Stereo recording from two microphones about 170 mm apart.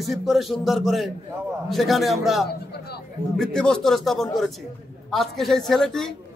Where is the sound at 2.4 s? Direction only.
70° left (ahead or behind).